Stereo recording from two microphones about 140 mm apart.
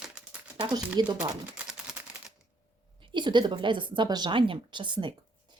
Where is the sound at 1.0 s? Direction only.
30° right (ahead or behind).